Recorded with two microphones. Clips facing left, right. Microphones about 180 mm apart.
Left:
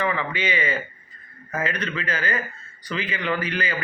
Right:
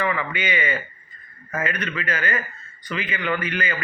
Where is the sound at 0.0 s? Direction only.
30° left (ahead or behind).